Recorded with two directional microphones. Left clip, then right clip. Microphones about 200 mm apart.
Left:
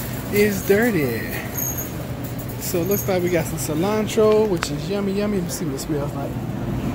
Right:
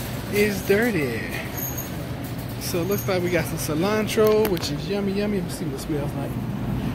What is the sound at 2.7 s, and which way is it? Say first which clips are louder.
Speech: left 3 dB; 15° left (ahead or behind).